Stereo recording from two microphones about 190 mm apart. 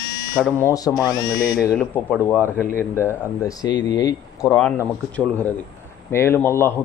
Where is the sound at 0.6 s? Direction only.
15° left (ahead or behind).